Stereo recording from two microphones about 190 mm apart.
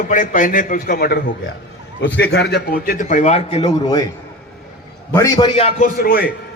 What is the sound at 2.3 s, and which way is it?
A man's voice, 60° left (ahead or behind).